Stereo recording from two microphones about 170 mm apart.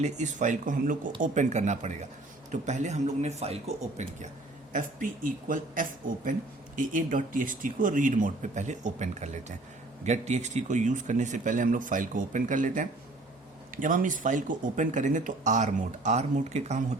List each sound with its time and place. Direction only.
0.0 s speech: 45° right (ahead or behind)
4.7 s speech: 50° right (ahead or behind)